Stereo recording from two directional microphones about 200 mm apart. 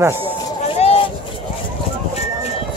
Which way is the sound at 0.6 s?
30° left (ahead or behind).